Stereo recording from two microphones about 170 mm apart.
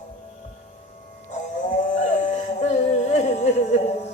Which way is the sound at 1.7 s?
45° left (ahead or behind).